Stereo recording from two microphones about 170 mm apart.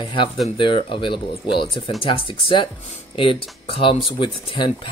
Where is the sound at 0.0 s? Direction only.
30° left (ahead or behind).